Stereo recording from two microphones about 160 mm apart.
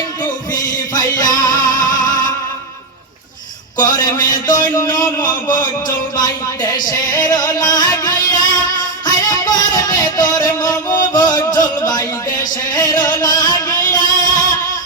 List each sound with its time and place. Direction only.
0.9 s music: 25° left (ahead or behind)
3.8 s a man's voice: 25° left (ahead or behind)
6.1 s music: 25° left (ahead or behind)